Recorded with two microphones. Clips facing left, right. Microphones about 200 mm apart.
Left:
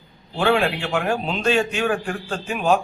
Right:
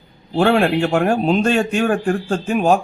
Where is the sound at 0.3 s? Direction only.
50° right (ahead or behind).